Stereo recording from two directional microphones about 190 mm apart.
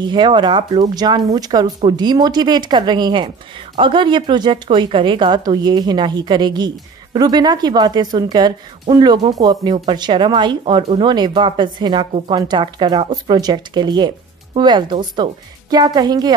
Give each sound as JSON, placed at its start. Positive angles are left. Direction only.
{"t": 0.0, "sound": "speech", "side_deg": -25}